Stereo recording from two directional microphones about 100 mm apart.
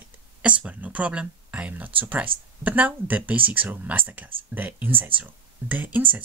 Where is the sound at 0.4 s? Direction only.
15° right (ahead or behind).